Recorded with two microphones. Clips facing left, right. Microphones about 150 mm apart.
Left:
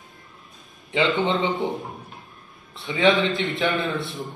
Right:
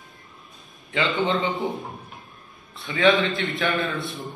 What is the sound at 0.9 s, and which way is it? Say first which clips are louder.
Speech: left 2 dB; 25° left (ahead or behind).